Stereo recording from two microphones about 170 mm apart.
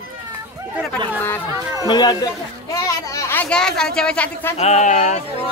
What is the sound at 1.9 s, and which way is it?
A child's voice, 25° left (ahead or behind).